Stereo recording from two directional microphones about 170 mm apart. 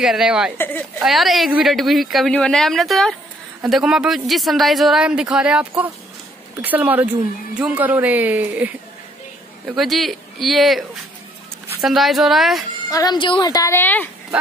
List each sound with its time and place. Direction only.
0.0 s a woman's voice: 5° right (ahead or behind)
0.6 s speech: 10° left (ahead or behind)
1.0 s a woman's voice: centre (ahead or behind)
12.9 s a woman's voice: 25° left (ahead or behind)